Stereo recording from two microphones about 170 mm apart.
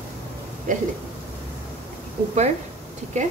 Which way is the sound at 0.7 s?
50° right (ahead or behind).